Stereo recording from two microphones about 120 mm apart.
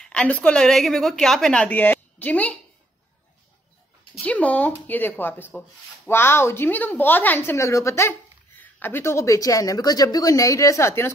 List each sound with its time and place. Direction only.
0.0 s a woman's voice: 10° left (ahead or behind)
4.2 s a woman's voice: 10° left (ahead or behind)